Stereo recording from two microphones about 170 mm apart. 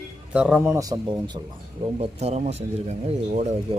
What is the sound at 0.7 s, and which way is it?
Speech, 20° right (ahead or behind).